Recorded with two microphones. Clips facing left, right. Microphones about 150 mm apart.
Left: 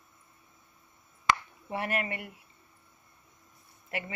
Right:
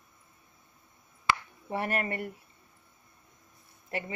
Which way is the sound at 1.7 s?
40° right (ahead or behind).